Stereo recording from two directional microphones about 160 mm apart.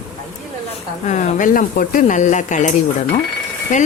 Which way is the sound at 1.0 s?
50° left (ahead or behind).